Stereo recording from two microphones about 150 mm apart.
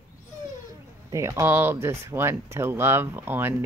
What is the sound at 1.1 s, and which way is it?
Speech, 20° right (ahead or behind).